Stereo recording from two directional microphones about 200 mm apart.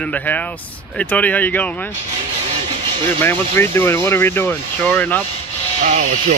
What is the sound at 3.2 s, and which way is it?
Speech, 10° left (ahead or behind).